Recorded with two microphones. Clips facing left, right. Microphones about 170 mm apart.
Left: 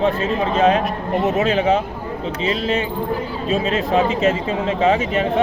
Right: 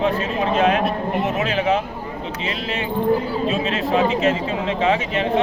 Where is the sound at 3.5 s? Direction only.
35° left (ahead or behind).